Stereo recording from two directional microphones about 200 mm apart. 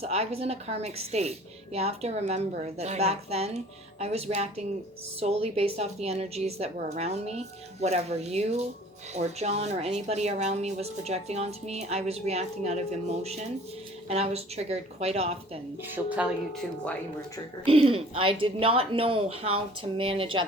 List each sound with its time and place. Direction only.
0.0 s speech: 30° right (ahead or behind)
14.1 s speech: 30° right (ahead or behind)
16.0 s speech: 5° right (ahead or behind)
17.7 s speech: 30° right (ahead or behind)